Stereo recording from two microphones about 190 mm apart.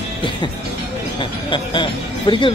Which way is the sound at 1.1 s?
25° left (ahead or behind).